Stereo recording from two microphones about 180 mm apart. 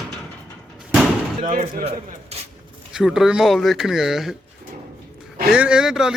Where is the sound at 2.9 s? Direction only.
Centre (ahead or behind).